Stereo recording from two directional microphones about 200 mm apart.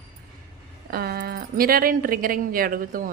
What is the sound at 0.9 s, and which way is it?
Speech, 50° right (ahead or behind).